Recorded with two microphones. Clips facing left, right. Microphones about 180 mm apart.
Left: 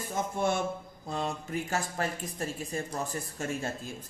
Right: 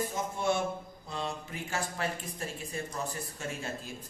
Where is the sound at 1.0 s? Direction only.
45° left (ahead or behind).